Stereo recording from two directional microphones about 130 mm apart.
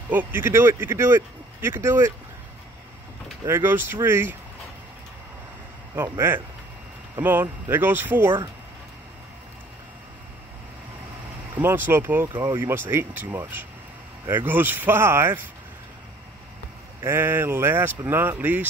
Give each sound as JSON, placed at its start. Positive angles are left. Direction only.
{"t": 0.1, "sound": "speech", "side_deg": -15}
{"t": 3.4, "sound": "speech", "side_deg": -15}
{"t": 6.1, "sound": "speech", "side_deg": -20}
{"t": 11.6, "sound": "speech", "side_deg": -15}
{"t": 17.0, "sound": "speech", "side_deg": -20}